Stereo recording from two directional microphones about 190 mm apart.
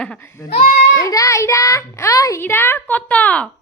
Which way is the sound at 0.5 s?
45° left (ahead or behind).